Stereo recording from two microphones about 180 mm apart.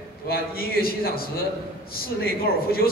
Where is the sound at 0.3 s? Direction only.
55° left (ahead or behind).